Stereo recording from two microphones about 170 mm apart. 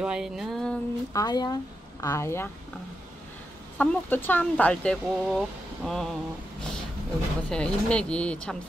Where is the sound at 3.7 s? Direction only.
10° left (ahead or behind).